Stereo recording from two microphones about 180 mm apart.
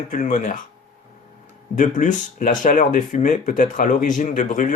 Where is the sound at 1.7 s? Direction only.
45° left (ahead or behind).